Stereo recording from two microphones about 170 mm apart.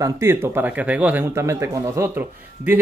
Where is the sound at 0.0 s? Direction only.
15° right (ahead or behind).